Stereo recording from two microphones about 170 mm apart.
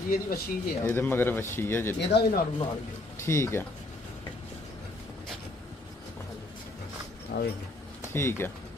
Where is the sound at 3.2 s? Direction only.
15° left (ahead or behind).